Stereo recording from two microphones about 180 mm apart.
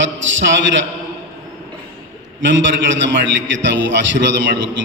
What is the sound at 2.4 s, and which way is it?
Speech, 90° right.